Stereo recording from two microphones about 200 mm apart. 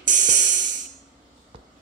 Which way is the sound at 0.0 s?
40° right (ahead or behind).